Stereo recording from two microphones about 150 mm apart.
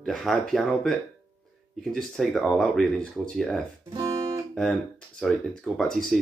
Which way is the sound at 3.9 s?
25° right (ahead or behind).